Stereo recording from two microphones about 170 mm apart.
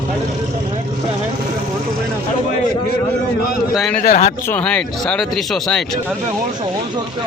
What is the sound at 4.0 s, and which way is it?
Speech, 45° left (ahead or behind).